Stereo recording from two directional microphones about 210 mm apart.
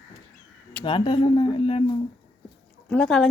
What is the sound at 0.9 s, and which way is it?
Speech, 25° left (ahead or behind).